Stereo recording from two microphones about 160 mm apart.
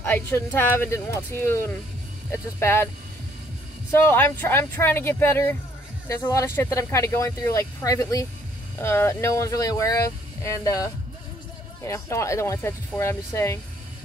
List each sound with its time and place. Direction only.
0.0 s speech: 15° left (ahead or behind)
3.9 s speech: 15° left (ahead or behind)